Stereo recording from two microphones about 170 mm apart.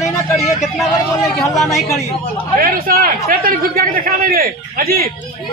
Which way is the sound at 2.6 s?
55° right (ahead or behind).